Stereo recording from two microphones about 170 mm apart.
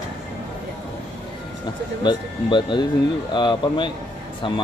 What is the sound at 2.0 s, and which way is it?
Speech, 25° left (ahead or behind).